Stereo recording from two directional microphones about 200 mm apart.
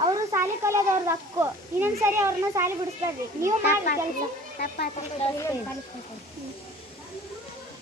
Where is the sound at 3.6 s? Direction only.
45° left (ahead or behind).